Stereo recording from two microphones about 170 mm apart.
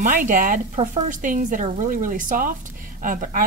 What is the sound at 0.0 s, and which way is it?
A woman's voice, 50° right (ahead or behind).